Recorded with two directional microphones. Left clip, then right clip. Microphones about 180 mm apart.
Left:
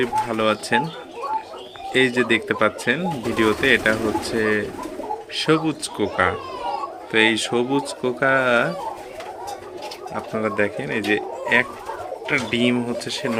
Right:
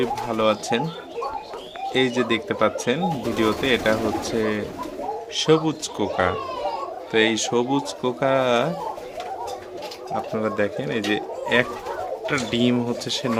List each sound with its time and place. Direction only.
0.0 s speech: 10° right (ahead or behind)
1.9 s speech: centre (ahead or behind)
10.2 s speech: 10° right (ahead or behind)